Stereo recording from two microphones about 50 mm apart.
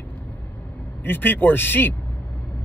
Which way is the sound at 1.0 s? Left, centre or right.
Left.